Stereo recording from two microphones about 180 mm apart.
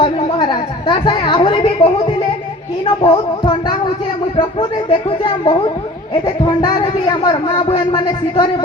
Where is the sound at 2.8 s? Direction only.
30° left (ahead or behind).